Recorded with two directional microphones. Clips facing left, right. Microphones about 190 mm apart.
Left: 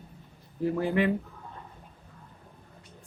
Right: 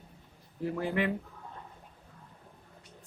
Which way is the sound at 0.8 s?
35° left (ahead or behind).